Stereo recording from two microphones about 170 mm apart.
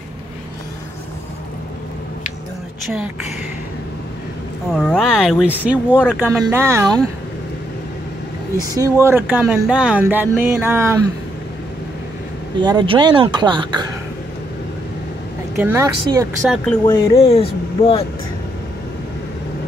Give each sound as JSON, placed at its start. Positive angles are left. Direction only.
{"t": 4.7, "sound": "speech", "side_deg": 0}
{"t": 8.6, "sound": "speech", "side_deg": -20}
{"t": 12.5, "sound": "speech", "side_deg": -25}
{"t": 15.6, "sound": "speech", "side_deg": -15}
{"t": 16.8, "sound": "speech", "side_deg": 20}
{"t": 17.2, "sound": "speech", "side_deg": 35}